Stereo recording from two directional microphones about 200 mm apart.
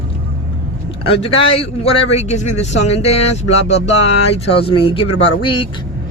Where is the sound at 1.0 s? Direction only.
25° left (ahead or behind).